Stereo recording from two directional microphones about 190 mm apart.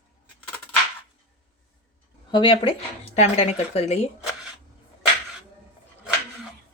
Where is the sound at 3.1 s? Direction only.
35° left (ahead or behind).